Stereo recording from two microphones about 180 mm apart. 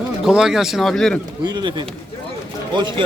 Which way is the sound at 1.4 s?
25° right (ahead or behind).